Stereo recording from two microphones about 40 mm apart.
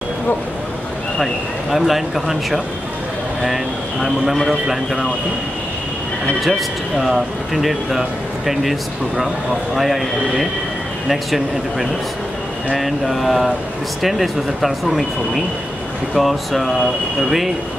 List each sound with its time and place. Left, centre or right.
1.2 s a man's voice: centre
7.0 s speech: centre